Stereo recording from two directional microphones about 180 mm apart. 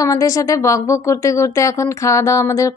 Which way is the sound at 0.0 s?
20° left (ahead or behind).